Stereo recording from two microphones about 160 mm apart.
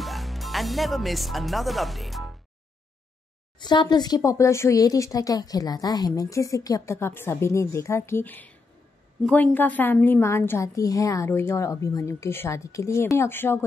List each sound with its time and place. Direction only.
0.0 s speech: centre (ahead or behind)
3.5 s a woman's voice: 30° left (ahead or behind)